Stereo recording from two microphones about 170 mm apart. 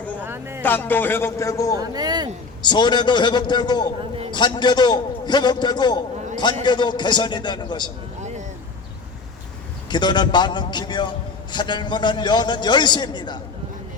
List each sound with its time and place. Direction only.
0.2 s a sound: 15° right (ahead or behind)
0.6 s speech: 10° left (ahead or behind)
1.8 s speech: 25° right (ahead or behind)
2.6 s a man's voice: 25° left (ahead or behind)
9.9 s a man's voice: 25° left (ahead or behind)